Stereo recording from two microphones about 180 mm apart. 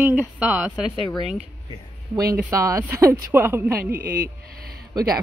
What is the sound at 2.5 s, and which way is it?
Speech, 20° right (ahead or behind).